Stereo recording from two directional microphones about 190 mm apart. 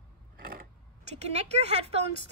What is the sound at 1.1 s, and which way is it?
Speech, 35° right (ahead or behind).